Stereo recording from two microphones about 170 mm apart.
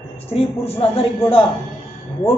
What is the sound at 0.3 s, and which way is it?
A man's voice, 35° left (ahead or behind).